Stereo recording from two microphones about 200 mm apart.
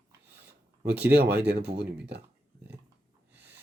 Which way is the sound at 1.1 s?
55° right (ahead or behind).